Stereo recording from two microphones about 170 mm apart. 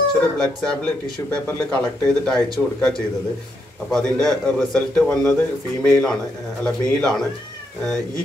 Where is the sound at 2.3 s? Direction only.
20° right (ahead or behind).